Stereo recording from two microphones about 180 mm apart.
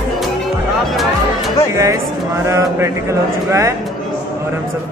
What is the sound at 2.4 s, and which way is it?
Speech, 15° right (ahead or behind).